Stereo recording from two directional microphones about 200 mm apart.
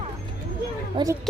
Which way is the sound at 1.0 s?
25° right (ahead or behind).